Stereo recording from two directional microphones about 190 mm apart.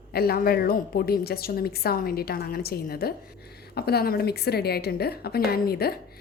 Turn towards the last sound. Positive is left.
turn(degrees=55)  # may be behind; listen again after turning